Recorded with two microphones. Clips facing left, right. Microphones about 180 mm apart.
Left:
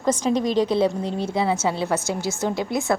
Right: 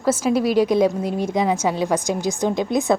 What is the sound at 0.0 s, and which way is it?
A woman's voice, 5° right (ahead or behind).